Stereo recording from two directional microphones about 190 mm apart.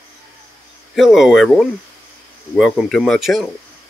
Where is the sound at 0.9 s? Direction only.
Centre (ahead or behind).